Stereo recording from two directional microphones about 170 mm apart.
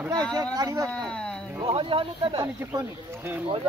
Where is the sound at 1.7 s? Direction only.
30° right (ahead or behind).